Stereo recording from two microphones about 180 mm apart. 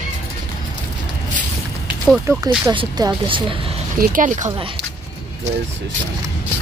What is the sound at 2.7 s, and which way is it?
Speech, 20° right (ahead or behind).